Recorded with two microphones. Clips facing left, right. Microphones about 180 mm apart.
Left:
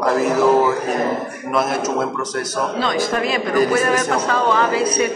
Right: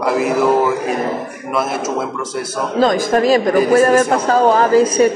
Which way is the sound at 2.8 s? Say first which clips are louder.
Right 9 dB; 45° right (ahead or behind).